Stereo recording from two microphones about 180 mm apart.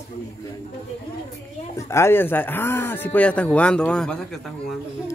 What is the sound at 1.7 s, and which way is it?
Speech, 15° left (ahead or behind).